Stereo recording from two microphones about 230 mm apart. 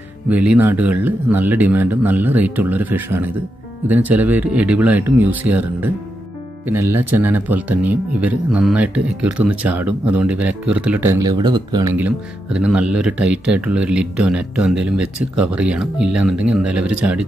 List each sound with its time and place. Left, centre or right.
0.3 s speech: centre